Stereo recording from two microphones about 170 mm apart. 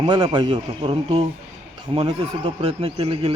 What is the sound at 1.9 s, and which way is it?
Speech, 30° right (ahead or behind).